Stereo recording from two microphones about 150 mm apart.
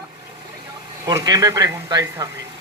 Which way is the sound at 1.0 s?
25° right (ahead or behind).